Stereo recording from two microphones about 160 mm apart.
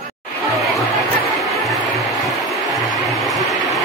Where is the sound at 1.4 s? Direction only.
Centre (ahead or behind).